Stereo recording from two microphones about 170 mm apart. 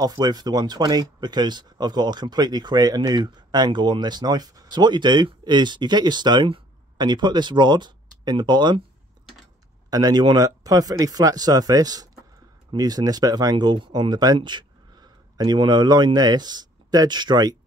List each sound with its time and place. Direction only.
0.0 s speech: 20° right (ahead or behind)
9.8 s speech: 20° right (ahead or behind)